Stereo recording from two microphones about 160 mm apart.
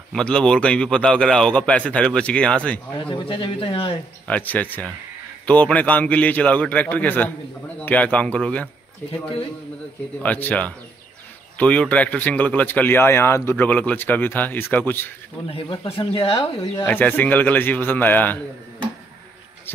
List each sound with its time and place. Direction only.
0.1 s speech: 5° left (ahead or behind)
3.0 s speech: 30° left (ahead or behind)
4.3 s speech: 10° left (ahead or behind)
10.2 s speech: 10° left (ahead or behind)
16.0 s speech: 35° left (ahead or behind)
16.8 s speech: 10° left (ahead or behind)